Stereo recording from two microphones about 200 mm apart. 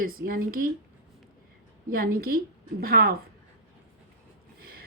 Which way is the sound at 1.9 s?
45° right (ahead or behind).